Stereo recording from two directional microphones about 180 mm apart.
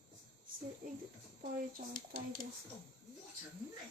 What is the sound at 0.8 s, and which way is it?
Speech, 55° right (ahead or behind).